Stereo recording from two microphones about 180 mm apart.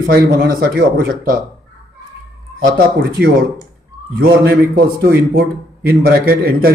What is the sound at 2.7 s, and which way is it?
Speech, 55° right (ahead or behind).